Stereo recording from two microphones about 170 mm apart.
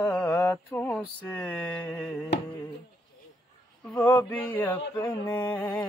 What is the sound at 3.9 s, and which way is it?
Music, 10° left (ahead or behind).